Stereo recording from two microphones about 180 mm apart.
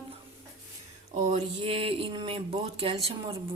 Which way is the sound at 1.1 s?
40° right (ahead or behind).